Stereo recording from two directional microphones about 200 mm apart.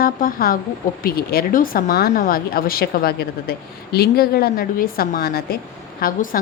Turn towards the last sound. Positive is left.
turn(degrees=45)  # may be behind; listen again after turning